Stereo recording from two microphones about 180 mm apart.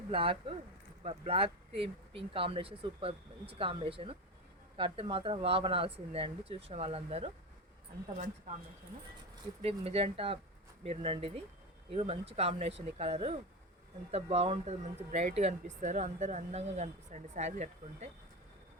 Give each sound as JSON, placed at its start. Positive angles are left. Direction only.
{"t": 0.1, "sound": "speech", "side_deg": -30}
{"t": 9.6, "sound": "speech", "side_deg": -35}